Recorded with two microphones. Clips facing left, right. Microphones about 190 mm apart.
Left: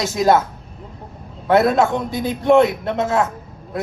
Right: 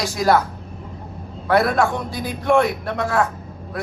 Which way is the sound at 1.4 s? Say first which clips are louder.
Left 3 dB; 20° left (ahead or behind).